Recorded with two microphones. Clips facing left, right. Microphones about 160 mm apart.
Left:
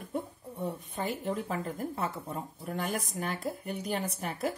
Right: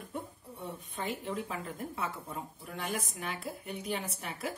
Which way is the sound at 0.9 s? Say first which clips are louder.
Left 2 dB; 40° left (ahead or behind).